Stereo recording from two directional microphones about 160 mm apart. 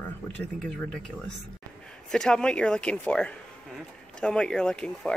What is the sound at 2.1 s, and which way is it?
Speech, 5° left (ahead or behind).